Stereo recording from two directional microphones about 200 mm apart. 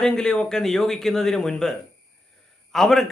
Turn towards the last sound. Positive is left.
turn(degrees=0)  # may be behind; listen again after turning